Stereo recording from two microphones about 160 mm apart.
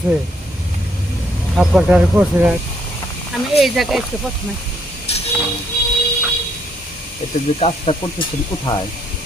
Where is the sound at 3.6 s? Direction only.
Centre (ahead or behind).